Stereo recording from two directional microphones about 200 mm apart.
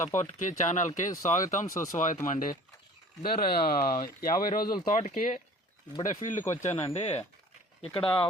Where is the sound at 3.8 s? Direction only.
45° left (ahead or behind).